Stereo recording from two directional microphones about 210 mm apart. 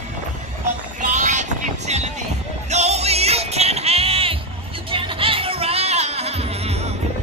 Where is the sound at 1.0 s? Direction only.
35° right (ahead or behind).